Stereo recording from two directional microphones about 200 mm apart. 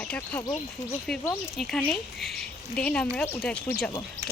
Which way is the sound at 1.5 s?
Centre (ahead or behind).